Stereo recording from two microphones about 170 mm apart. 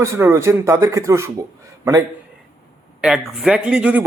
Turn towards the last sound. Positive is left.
turn(degrees=-5)  # may be behind; listen again after turning